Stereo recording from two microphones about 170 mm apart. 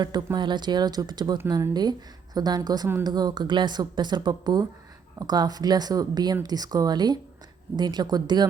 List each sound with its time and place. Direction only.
0.0 s speech: 25° right (ahead or behind)